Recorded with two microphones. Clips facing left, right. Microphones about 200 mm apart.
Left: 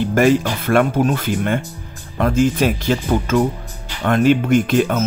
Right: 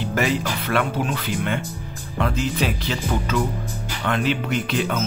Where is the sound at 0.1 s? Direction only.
50° left (ahead or behind).